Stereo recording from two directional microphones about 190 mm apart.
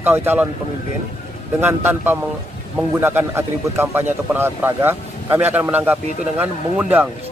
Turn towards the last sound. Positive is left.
turn(degrees=-10)  # may be behind; listen again after turning